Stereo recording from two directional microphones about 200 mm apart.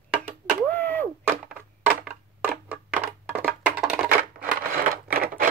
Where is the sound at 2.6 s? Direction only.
10° right (ahead or behind).